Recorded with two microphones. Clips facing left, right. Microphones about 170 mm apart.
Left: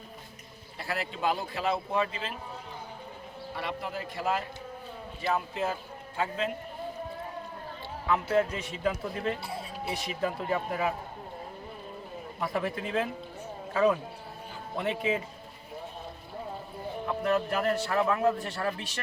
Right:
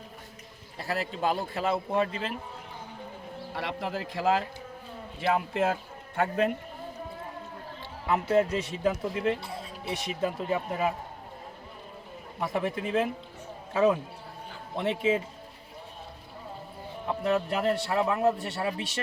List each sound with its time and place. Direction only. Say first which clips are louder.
0.9 s a man's voice: right 1 dB; 40° right (ahead or behind)
3.5 s speech: right 2 dB; 90° right
6.1 s a man's voice: right 5 dB; 55° right (ahead or behind)
8.1 s a man's voice: right 2 dB; 20° right (ahead or behind)
12.4 s a man's voice: right 2 dB; 20° right (ahead or behind)
14.8 s a man's voice: right 3 dB; 25° right (ahead or behind)
17.1 s a man's voice: right 1 dB; 20° right (ahead or behind)